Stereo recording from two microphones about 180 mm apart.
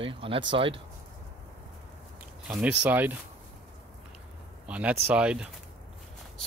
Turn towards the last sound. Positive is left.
turn(degrees=-5)  # may be behind; listen again after turning